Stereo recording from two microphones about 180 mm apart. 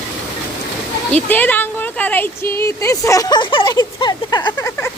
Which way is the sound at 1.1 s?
10° left (ahead or behind).